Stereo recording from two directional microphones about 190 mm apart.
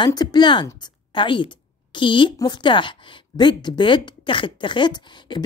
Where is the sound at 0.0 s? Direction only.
20° left (ahead or behind).